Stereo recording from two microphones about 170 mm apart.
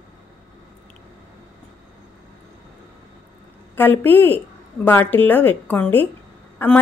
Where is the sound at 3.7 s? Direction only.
10° left (ahead or behind).